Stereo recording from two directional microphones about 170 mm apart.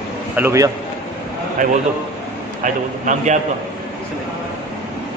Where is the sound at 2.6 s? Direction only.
50° right (ahead or behind).